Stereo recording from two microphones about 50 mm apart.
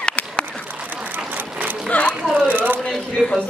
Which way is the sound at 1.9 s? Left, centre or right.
Left.